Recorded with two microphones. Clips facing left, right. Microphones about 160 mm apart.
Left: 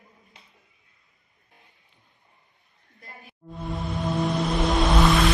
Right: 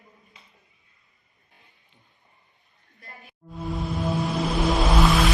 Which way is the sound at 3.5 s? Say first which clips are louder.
Right 1 dB; centre (ahead or behind).